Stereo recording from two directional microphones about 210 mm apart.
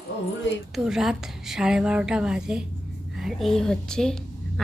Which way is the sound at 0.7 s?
Centre (ahead or behind).